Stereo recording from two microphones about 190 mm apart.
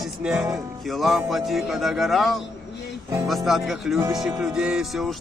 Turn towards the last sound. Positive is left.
turn(degrees=0)  # may be behind; listen again after turning